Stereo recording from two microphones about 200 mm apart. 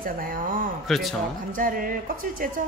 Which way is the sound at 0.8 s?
Centre (ahead or behind).